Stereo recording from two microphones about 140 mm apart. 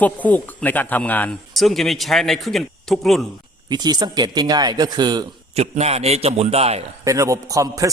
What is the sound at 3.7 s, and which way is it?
A man's voice, 30° right (ahead or behind).